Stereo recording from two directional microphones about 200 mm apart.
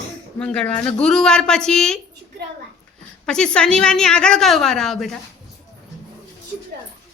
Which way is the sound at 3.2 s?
5° left (ahead or behind).